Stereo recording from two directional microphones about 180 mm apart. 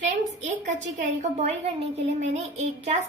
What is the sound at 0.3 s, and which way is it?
A woman's voice, 40° right (ahead or behind).